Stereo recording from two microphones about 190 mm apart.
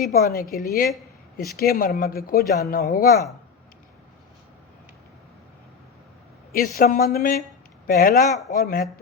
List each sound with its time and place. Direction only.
0.1 s speech: 50° left (ahead or behind)
6.7 s speech: 50° left (ahead or behind)